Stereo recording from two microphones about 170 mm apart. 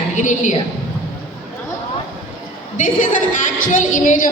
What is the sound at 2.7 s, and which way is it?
A woman's voice, 50° left (ahead or behind).